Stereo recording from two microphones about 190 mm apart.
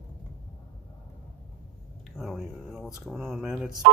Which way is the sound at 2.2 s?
Centre (ahead or behind).